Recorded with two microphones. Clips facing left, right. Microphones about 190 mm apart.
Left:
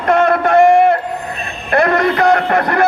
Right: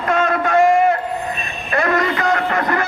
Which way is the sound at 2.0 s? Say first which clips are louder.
Left 6 dB; 65° left (ahead or behind).